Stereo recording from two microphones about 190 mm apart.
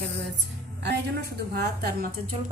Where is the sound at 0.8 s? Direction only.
60° right (ahead or behind).